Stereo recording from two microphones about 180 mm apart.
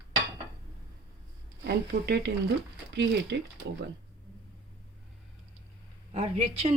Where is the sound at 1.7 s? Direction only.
65° right (ahead or behind).